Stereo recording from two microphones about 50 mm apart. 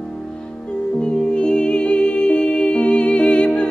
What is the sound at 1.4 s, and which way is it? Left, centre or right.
Music, left.